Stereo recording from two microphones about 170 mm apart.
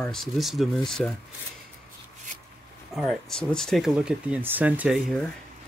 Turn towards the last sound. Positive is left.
turn(degrees=-10)  # may be behind; listen again after turning